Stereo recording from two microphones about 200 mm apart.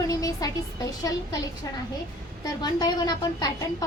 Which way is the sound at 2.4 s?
20° left (ahead or behind).